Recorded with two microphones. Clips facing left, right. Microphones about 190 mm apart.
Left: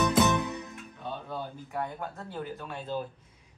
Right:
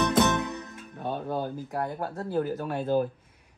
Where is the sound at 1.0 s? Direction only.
40° right (ahead or behind).